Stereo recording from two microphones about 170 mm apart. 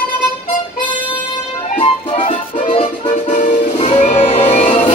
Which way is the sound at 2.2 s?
35° left (ahead or behind).